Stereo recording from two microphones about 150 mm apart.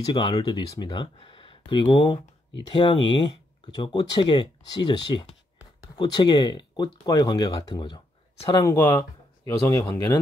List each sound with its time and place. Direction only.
0.0 s speech: 30° left (ahead or behind)